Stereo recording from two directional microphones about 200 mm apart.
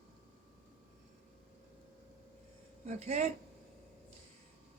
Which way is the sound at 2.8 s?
35° right (ahead or behind).